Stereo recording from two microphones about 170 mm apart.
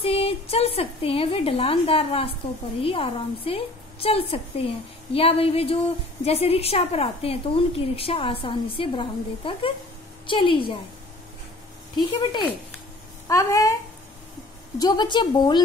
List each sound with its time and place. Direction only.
0.0 s a woman's voice: 35° left (ahead or behind)
12.1 s a woman's voice: 25° left (ahead or behind)
14.8 s a woman's voice: 25° left (ahead or behind)